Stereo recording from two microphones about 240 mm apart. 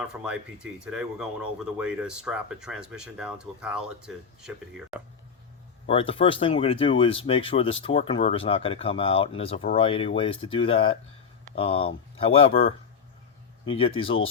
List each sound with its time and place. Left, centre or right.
0.1 s speech: centre
5.8 s speech: left